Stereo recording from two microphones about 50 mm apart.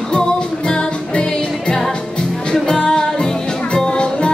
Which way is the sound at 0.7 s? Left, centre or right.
Centre.